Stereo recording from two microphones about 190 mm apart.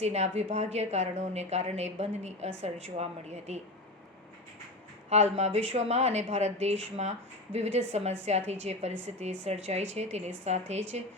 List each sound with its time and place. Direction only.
0.0 s speech: 35° right (ahead or behind)
5.0 s speech: 35° right (ahead or behind)